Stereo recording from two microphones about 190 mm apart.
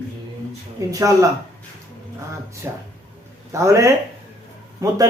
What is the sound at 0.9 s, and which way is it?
Speech, 15° right (ahead or behind).